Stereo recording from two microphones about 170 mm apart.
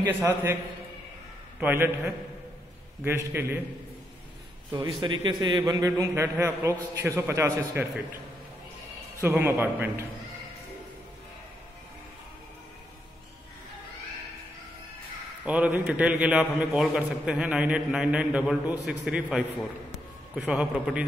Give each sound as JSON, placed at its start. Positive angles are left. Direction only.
{"t": 0.2, "sound": "a man's voice", "side_deg": -15}
{"t": 1.6, "sound": "a man's voice", "side_deg": -10}
{"t": 4.7, "sound": "a man's voice", "side_deg": -25}
{"t": 9.2, "sound": "a man's voice", "side_deg": -15}
{"t": 15.4, "sound": "a man's voice", "side_deg": -10}